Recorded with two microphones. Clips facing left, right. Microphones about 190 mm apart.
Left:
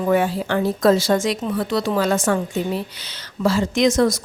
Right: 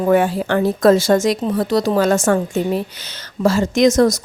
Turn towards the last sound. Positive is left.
turn(degrees=-40)  # may be behind; listen again after turning